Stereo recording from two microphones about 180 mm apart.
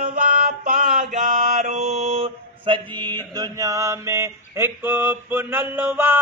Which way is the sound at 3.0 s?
10° left (ahead or behind).